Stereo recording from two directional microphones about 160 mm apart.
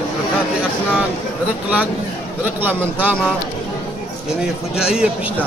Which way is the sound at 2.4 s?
10° right (ahead or behind).